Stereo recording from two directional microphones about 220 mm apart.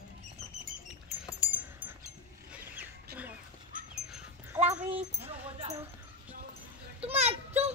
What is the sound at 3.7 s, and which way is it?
Dog, 35° right (ahead or behind).